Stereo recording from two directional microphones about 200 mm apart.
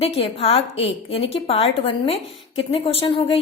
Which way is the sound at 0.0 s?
30° left (ahead or behind).